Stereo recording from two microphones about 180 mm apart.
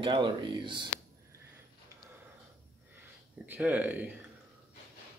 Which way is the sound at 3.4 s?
10° right (ahead or behind).